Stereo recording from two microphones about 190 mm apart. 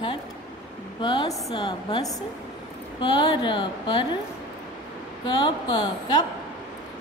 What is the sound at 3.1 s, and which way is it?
Speech, 25° left (ahead or behind).